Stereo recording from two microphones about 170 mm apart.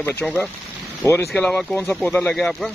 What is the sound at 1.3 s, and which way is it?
Speech, 5° left (ahead or behind).